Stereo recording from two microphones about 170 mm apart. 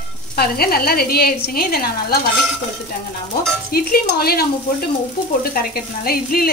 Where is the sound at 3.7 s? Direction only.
65° left (ahead or behind).